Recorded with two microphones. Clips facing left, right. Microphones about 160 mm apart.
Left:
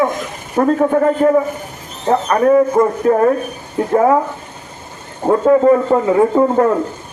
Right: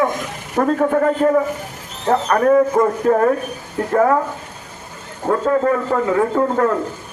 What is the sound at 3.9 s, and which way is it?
Speech, 15° left (ahead or behind).